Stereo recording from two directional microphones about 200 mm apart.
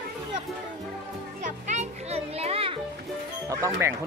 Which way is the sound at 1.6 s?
35° right (ahead or behind).